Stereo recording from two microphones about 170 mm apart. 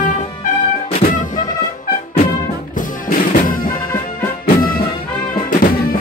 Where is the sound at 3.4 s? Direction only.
55° left (ahead or behind).